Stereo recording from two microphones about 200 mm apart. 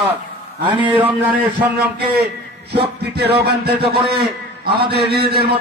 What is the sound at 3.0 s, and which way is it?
Music, 55° right (ahead or behind).